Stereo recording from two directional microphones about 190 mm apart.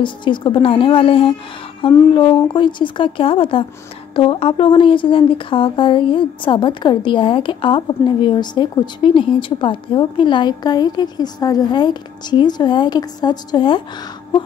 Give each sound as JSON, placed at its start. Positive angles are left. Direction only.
{"t": 0.0, "sound": "speech", "side_deg": 25}